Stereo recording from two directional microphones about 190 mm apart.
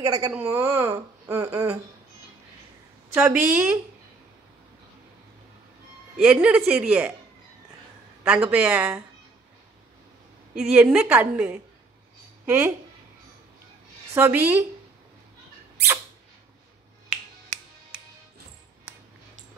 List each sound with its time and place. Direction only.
0.0 s speech: 15° right (ahead or behind)
3.2 s speech: 10° right (ahead or behind)
6.1 s a woman's voice: 5° right (ahead or behind)
8.2 s speech: 5° right (ahead or behind)
10.5 s speech: 5° right (ahead or behind)
14.1 s speech: 10° right (ahead or behind)